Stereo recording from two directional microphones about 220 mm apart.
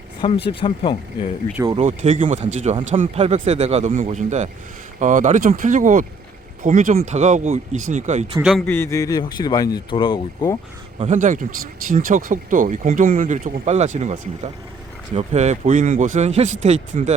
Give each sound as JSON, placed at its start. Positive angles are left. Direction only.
{"t": 0.4, "sound": "speech", "side_deg": 25}
{"t": 1.7, "sound": "speech", "side_deg": -35}
{"t": 8.4, "sound": "speech", "side_deg": 0}
{"t": 11.0, "sound": "speech", "side_deg": -35}